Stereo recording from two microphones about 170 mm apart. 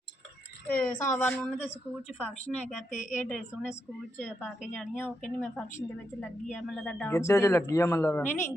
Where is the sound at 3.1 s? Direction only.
Centre (ahead or behind).